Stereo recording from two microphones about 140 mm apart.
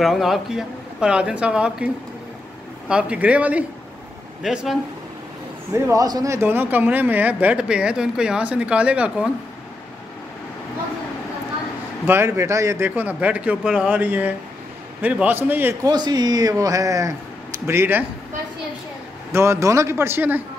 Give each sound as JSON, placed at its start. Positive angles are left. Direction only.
{"t": 0.0, "sound": "speech", "side_deg": 0}
{"t": 2.9, "sound": "speech", "side_deg": -10}
{"t": 5.9, "sound": "speech", "side_deg": -25}
{"t": 12.1, "sound": "speech", "side_deg": -20}
{"t": 15.8, "sound": "speech", "side_deg": -30}
{"t": 19.3, "sound": "speech", "side_deg": -20}